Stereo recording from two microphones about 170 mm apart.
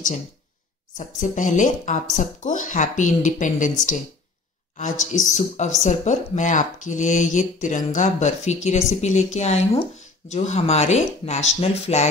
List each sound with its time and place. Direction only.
0.9 s speech: 45° left (ahead or behind)
5.2 s speech: 45° left (ahead or behind)